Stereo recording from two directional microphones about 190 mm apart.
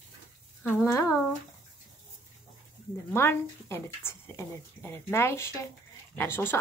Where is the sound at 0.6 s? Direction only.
10° left (ahead or behind).